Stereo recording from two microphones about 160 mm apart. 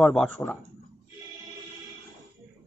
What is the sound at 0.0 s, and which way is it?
Speech, 5° left (ahead or behind).